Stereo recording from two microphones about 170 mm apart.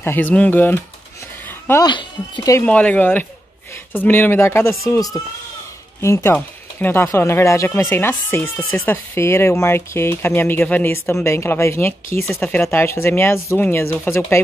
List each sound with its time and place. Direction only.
0.0 s speech: 10° left (ahead or behind)
1.7 s speech: 25° left (ahead or behind)
2.6 s speech: 5° left (ahead or behind)